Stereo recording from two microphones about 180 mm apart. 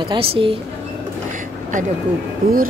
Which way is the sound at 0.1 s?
30° right (ahead or behind).